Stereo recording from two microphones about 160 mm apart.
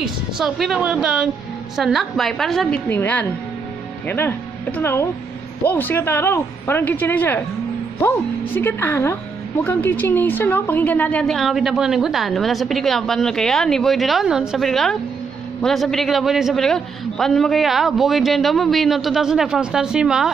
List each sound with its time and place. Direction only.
0.0 s a woman's voice: centre (ahead or behind)